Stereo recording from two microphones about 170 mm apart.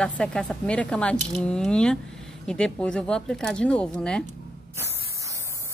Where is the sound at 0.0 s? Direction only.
5° left (ahead or behind).